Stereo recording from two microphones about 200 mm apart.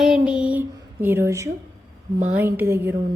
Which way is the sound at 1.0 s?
10° right (ahead or behind).